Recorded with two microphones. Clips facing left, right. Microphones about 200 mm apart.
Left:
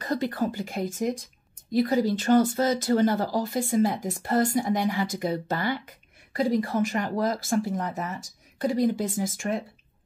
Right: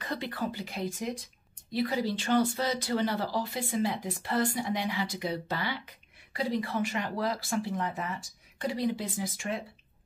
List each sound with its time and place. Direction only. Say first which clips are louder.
0.0 s speech: left 7 dB; 45° left (ahead or behind)